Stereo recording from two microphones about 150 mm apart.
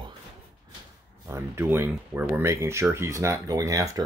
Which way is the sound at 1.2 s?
15° right (ahead or behind).